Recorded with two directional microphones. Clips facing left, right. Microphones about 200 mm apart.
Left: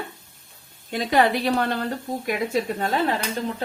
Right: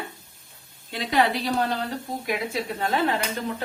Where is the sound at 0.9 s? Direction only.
45° left (ahead or behind).